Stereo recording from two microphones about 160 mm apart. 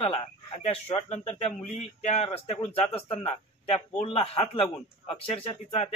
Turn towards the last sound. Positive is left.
turn(degrees=40)  # may be behind; listen again after turning